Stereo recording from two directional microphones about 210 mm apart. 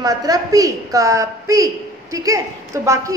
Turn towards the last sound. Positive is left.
turn(degrees=-15)  # may be behind; listen again after turning